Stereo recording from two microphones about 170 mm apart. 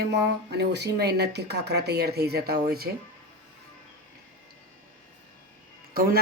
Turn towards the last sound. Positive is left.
turn(degrees=-60)  # may be behind; listen again after turning